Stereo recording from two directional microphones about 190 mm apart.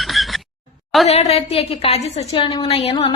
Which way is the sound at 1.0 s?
35° left (ahead or behind).